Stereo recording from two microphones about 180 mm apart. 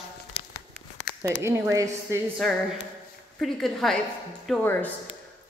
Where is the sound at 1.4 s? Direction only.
15° right (ahead or behind).